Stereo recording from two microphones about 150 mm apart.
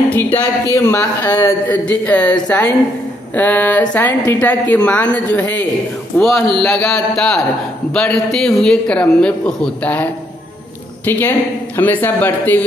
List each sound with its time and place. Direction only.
0.1 s a man's voice: 10° left (ahead or behind)
1.5 s a man's voice: 10° left (ahead or behind)
7.2 s a man's voice: 5° left (ahead or behind)
11.1 s a man's voice: 15° left (ahead or behind)